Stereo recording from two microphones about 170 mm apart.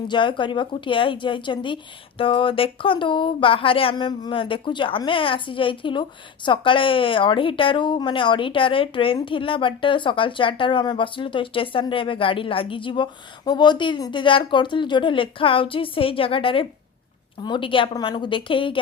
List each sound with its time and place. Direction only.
0.1 s speech: 25° left (ahead or behind)